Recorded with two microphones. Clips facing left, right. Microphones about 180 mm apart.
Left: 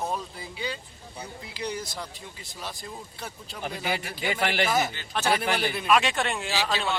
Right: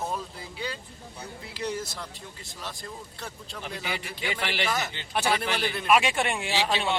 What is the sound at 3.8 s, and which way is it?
Speech, 45° left (ahead or behind).